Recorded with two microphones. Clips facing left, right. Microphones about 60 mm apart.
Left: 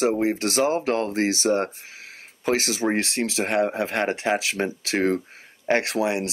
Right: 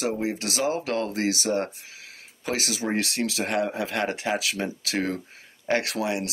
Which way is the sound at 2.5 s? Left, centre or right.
Left.